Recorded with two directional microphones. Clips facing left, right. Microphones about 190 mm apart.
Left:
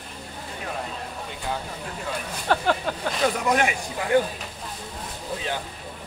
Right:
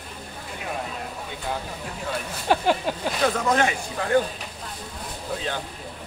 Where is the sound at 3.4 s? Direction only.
15° left (ahead or behind).